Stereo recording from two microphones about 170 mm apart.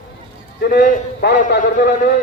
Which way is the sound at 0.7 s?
70° left (ahead or behind).